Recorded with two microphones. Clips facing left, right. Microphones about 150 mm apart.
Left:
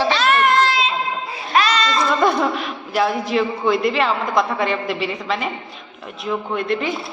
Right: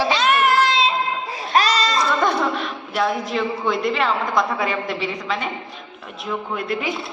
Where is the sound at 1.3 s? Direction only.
40° right (ahead or behind).